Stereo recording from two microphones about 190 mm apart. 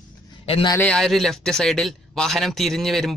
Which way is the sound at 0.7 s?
5° left (ahead or behind).